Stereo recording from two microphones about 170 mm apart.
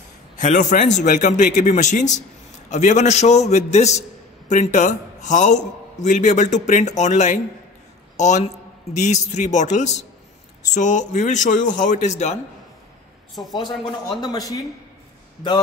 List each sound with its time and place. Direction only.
0.4 s a man's voice: 45° left (ahead or behind)
13.7 s speech: centre (ahead or behind)
14.2 s speech: 20° left (ahead or behind)